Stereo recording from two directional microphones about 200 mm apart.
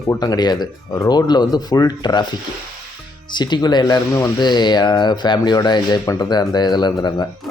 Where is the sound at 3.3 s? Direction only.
20° left (ahead or behind).